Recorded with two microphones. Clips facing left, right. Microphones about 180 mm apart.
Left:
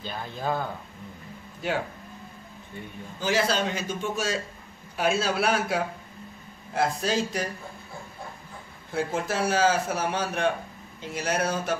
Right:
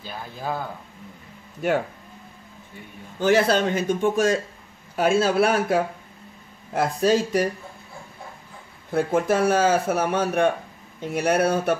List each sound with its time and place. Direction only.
0.0 s speech: 5° right (ahead or behind)
3.2 s a man's voice: 60° right (ahead or behind)
8.9 s a man's voice: 55° right (ahead or behind)